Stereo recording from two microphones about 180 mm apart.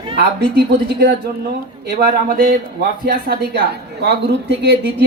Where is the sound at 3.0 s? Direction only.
60° right (ahead or behind).